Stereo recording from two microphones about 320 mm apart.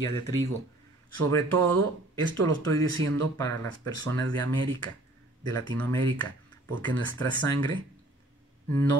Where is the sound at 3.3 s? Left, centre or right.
Centre.